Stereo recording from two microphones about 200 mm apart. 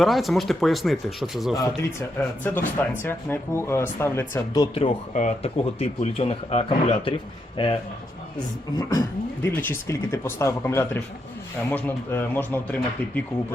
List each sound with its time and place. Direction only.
0.0 s speech: centre (ahead or behind)
1.5 s a man's voice: 15° left (ahead or behind)
8.8 s speech: 10° left (ahead or behind)